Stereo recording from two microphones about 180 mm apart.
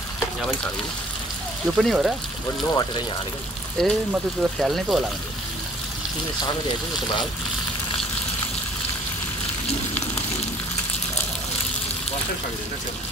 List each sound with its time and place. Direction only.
1.8 s speech: centre (ahead or behind)
3.8 s speech: centre (ahead or behind)